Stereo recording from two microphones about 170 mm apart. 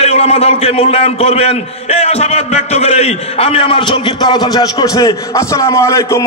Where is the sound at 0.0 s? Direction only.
40° left (ahead or behind).